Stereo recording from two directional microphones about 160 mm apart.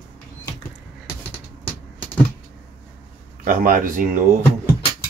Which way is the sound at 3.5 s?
60° right (ahead or behind).